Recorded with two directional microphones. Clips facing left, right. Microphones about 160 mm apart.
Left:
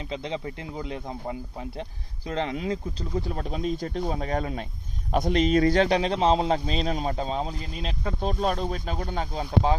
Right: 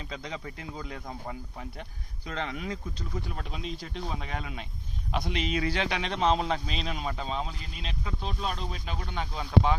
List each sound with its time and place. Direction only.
0.1 s a man's voice: 25° left (ahead or behind)